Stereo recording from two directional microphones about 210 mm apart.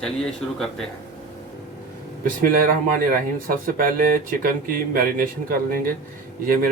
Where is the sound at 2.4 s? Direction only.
45° right (ahead or behind).